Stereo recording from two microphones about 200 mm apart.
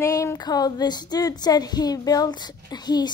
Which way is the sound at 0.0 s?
15° left (ahead or behind).